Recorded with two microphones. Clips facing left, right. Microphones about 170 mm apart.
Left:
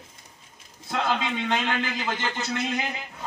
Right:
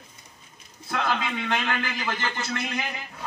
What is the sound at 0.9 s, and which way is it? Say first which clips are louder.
A man's voice: left 1 dB; 20° left (ahead or behind).